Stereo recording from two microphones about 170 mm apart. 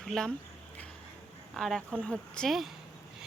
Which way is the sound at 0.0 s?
5° left (ahead or behind).